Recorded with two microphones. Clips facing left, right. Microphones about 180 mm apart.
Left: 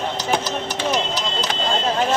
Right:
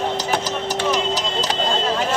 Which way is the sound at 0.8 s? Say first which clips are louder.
Right 2 dB; 90° right.